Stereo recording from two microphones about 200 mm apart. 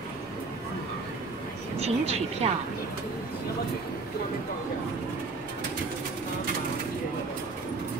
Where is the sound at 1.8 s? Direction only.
30° right (ahead or behind).